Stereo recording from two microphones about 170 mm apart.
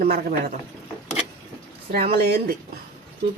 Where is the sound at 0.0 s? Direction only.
55° right (ahead or behind).